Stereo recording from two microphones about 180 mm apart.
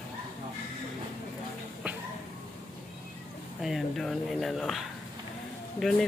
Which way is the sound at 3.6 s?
Centre (ahead or behind).